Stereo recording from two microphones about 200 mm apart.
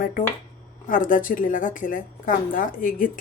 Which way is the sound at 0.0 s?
40° left (ahead or behind).